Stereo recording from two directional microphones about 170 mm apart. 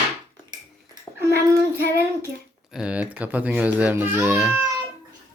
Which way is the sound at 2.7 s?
5° right (ahead or behind).